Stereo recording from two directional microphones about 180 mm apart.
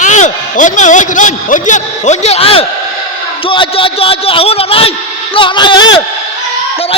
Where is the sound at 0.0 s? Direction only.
45° left (ahead or behind); by 5.8 s 25° left (ahead or behind).